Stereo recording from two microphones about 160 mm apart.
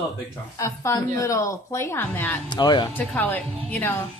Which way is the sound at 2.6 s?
30° left (ahead or behind).